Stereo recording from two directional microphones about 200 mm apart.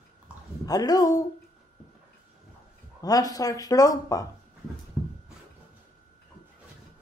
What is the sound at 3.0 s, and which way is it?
Speech, 20° left (ahead or behind).